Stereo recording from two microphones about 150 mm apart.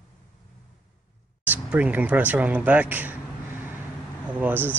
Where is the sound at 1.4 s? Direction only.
10° right (ahead or behind).